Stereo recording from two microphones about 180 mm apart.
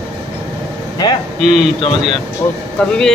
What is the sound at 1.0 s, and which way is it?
Speech, 25° left (ahead or behind).